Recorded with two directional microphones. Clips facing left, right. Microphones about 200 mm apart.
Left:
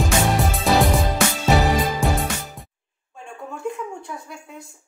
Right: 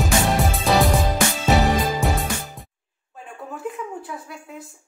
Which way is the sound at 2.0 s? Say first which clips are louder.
Left 1 dB; centre (ahead or behind).